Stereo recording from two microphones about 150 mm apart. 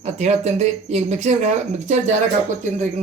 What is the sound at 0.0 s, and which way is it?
Speech, 50° right (ahead or behind).